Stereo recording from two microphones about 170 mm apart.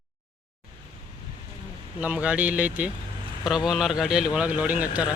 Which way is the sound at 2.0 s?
10° right (ahead or behind).